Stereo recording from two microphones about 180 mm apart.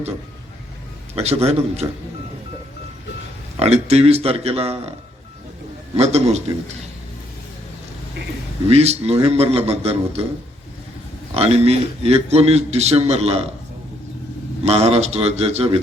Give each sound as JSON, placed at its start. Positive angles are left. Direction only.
{"t": 1.1, "sound": "a man's voice", "side_deg": -35}
{"t": 3.6, "sound": "a man's voice", "side_deg": -35}
{"t": 6.0, "sound": "a man's voice", "side_deg": -35}
{"t": 8.6, "sound": "a man's voice", "side_deg": -35}
{"t": 11.3, "sound": "a man's voice", "side_deg": -35}
{"t": 14.6, "sound": "a man's voice", "side_deg": -35}